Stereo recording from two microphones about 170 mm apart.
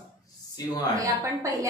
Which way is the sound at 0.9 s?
20° right (ahead or behind).